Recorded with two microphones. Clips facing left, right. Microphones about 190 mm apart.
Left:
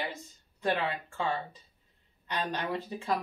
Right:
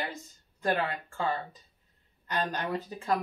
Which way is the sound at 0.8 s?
Centre (ahead or behind).